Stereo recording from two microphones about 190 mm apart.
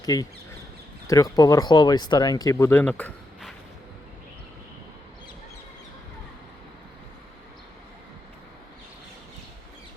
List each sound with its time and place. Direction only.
0.0 s speech: 20° left (ahead or behind)